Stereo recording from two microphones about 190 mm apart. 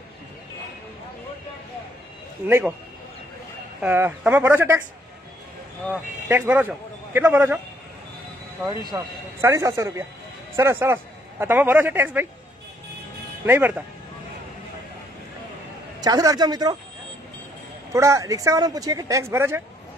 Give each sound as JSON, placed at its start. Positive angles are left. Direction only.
{"t": 2.4, "sound": "speech", "side_deg": -10}
{"t": 3.8, "sound": "speech", "side_deg": -10}
{"t": 5.9, "sound": "a man's voice", "side_deg": -10}
{"t": 13.5, "sound": "speech", "side_deg": -10}
{"t": 16.0, "sound": "a man's voice", "side_deg": -20}
{"t": 17.9, "sound": "speech", "side_deg": -15}